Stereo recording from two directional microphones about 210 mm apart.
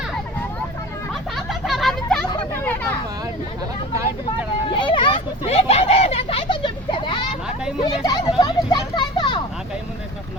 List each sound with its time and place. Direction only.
1.4 s a sound: centre (ahead or behind)
4.8 s vehicle: 20° left (ahead or behind)
7.8 s children playing: 20° left (ahead or behind)